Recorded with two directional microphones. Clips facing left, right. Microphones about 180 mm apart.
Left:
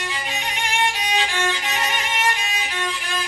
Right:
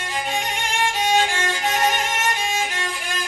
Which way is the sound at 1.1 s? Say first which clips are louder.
Right 2 dB; 45° right (ahead or behind).